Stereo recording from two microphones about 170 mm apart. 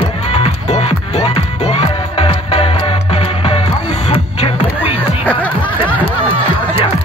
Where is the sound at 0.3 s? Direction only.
40° left (ahead or behind).